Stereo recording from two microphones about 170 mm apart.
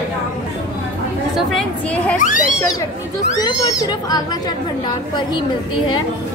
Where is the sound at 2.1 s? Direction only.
50° left (ahead or behind).